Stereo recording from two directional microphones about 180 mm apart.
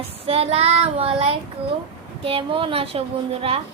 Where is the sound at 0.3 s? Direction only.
35° right (ahead or behind).